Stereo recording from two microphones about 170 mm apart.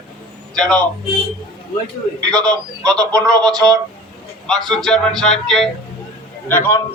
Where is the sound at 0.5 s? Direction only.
5° left (ahead or behind).